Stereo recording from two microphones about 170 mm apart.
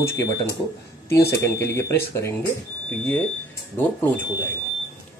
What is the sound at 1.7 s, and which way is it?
Speech, 15° left (ahead or behind).